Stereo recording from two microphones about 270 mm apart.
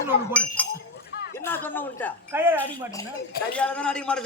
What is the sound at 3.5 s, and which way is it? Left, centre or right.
Speech, centre.